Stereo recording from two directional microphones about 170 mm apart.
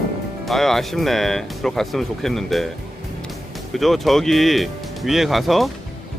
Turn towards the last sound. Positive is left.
turn(degrees=0)  # may be behind; listen again after turning